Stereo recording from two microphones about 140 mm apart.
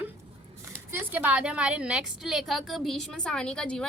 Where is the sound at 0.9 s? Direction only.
10° right (ahead or behind).